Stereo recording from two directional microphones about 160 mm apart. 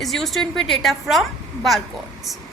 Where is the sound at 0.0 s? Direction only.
Centre (ahead or behind).